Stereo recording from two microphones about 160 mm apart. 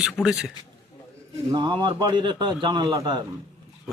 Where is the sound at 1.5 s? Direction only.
30° right (ahead or behind).